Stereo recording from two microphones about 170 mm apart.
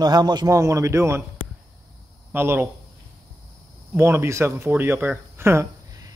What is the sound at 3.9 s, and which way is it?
A man's voice, 15° right (ahead or behind).